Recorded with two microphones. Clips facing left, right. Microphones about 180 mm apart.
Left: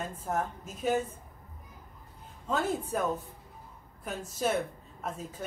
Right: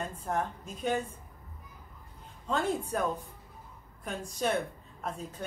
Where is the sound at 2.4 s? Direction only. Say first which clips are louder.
Even; 5° left (ahead or behind).